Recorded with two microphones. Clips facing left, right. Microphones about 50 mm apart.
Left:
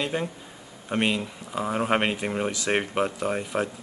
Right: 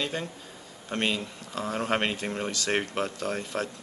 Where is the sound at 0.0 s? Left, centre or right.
Centre.